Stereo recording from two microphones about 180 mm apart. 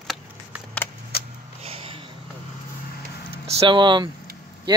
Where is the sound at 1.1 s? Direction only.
60° left (ahead or behind).